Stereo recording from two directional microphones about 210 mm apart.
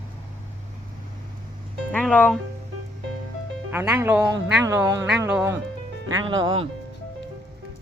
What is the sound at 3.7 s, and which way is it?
Speech, 5° right (ahead or behind).